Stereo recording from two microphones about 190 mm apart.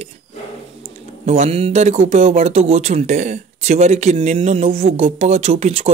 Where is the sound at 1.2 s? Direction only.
35° right (ahead or behind).